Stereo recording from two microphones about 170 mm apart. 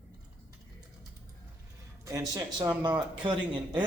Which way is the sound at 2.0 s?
20° right (ahead or behind).